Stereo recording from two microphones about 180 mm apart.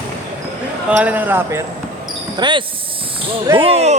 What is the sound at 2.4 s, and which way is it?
Speech, 25° right (ahead or behind).